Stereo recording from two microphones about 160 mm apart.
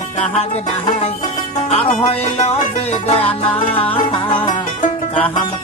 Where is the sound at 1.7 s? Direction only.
40° left (ahead or behind).